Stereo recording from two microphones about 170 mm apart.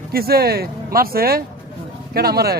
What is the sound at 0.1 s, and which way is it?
A man's voice, 65° right (ahead or behind).